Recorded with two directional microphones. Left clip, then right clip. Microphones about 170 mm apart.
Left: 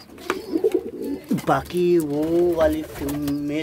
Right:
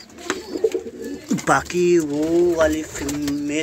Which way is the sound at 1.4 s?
Centre (ahead or behind).